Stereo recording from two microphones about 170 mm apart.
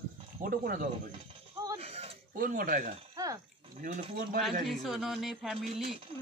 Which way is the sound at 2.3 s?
55° right (ahead or behind).